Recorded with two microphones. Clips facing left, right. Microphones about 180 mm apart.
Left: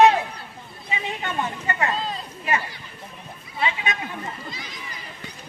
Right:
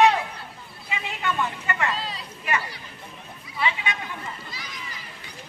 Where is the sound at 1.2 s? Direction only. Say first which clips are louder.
Right 3 dB; 40° left (ahead or behind).